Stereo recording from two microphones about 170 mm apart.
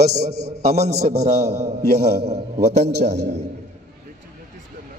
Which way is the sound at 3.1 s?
80° right.